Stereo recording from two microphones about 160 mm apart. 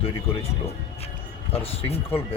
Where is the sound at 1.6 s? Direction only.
40° left (ahead or behind).